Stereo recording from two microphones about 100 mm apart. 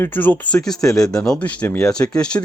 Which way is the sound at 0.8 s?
30° left (ahead or behind).